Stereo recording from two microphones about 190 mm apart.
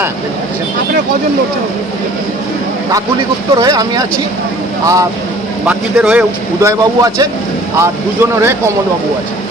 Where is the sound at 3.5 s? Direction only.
20° right (ahead or behind).